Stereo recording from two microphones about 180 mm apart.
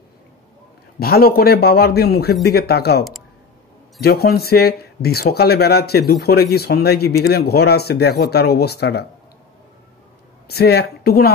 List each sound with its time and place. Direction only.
0.9 s speech: 60° left (ahead or behind)
4.0 s speech: 60° left (ahead or behind)
10.5 s speech: 60° left (ahead or behind)